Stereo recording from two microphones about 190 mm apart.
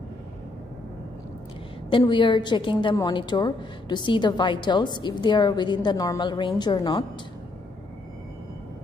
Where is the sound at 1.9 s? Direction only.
25° left (ahead or behind).